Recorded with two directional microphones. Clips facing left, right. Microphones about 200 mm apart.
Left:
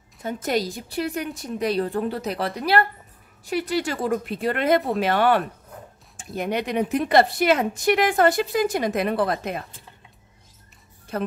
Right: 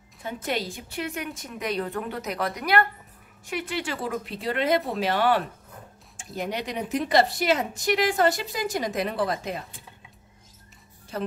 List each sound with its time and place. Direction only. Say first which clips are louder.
0.2 s a woman's voice: left 5 dB; 45° left (ahead or behind)
11.1 s a woman's voice: left 3 dB; 55° left (ahead or behind)